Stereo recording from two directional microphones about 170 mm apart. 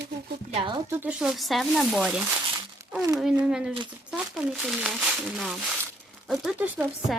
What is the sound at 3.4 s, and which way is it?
Speech, 5° right (ahead or behind).